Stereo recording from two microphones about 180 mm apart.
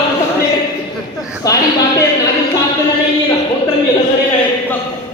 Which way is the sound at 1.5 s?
20° left (ahead or behind).